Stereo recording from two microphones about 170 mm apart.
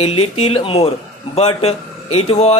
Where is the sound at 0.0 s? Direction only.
35° left (ahead or behind).